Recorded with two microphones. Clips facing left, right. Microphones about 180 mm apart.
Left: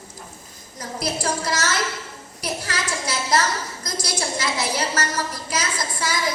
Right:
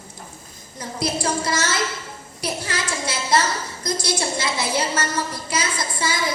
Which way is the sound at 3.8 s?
25° right (ahead or behind).